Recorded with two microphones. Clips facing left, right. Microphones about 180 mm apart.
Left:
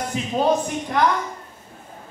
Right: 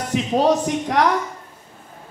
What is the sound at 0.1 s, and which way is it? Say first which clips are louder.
Speech: right 4 dB; 75° right (ahead or behind).